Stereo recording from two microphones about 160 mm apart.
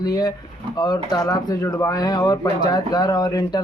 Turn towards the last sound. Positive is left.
turn(degrees=25)  # may be behind; listen again after turning